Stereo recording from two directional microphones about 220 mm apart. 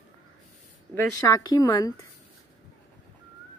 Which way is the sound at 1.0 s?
15° left (ahead or behind).